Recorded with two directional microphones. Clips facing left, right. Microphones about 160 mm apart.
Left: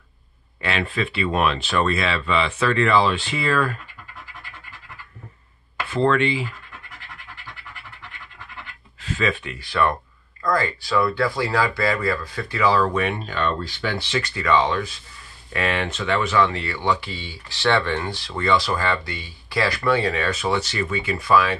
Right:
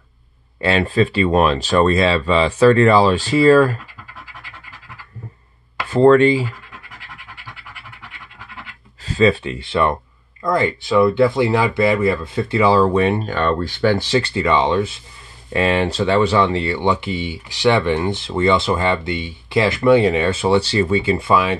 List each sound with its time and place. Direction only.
0.6 s speech: 35° right (ahead or behind)
5.9 s speech: 40° right (ahead or behind)
9.0 s speech: 35° right (ahead or behind)
13.2 s speech: 50° right (ahead or behind); by 21.5 s 25° right (ahead or behind)